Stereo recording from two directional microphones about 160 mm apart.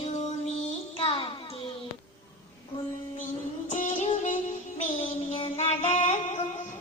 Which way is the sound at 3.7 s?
50° left (ahead or behind).